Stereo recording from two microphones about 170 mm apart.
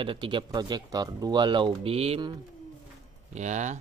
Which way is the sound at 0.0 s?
30° right (ahead or behind).